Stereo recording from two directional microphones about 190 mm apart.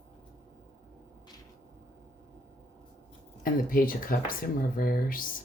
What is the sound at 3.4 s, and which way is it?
Speech, 50° left (ahead or behind).